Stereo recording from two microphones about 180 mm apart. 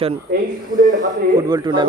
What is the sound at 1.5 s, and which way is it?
Speech, 25° right (ahead or behind).